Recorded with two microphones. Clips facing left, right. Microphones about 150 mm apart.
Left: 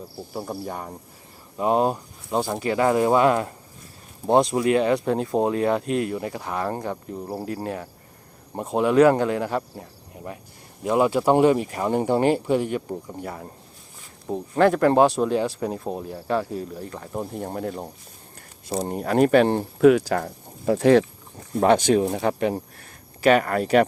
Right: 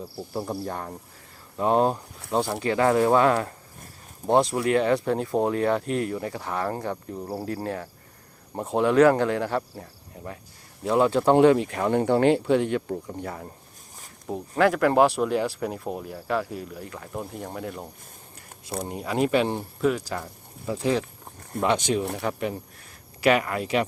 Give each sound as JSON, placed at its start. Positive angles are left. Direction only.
{"t": 0.2, "sound": "speech", "side_deg": 0}
{"t": 2.6, "sound": "speech", "side_deg": 15}
{"t": 10.8, "sound": "speech", "side_deg": 10}
{"t": 13.2, "sound": "speech", "side_deg": 25}
{"t": 17.3, "sound": "speech", "side_deg": 45}
{"t": 18.9, "sound": "speech", "side_deg": 50}
{"t": 21.6, "sound": "speech", "side_deg": 45}
{"t": 22.8, "sound": "a sound", "side_deg": 45}